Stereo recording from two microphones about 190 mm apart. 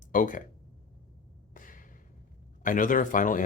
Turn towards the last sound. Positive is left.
turn(degrees=45)  # may be behind; listen again after turning